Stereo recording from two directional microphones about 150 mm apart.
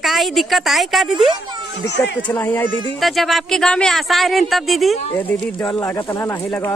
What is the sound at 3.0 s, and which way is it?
Speech, centre (ahead or behind).